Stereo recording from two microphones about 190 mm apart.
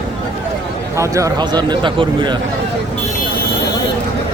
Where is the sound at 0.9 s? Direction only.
15° right (ahead or behind).